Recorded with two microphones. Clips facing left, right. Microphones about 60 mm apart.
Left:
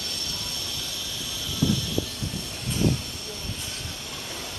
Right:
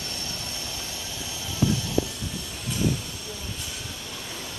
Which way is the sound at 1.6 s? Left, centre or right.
Right.